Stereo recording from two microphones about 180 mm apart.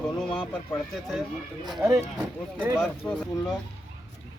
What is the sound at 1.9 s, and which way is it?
Speech, 15° right (ahead or behind).